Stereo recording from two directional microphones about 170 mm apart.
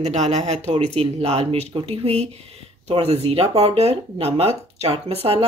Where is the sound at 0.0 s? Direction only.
40° right (ahead or behind).